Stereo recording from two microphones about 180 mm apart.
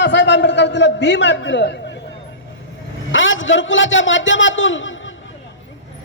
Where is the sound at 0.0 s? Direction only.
80° left.